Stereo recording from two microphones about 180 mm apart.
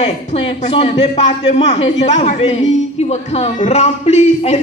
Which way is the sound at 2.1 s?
35° left (ahead or behind).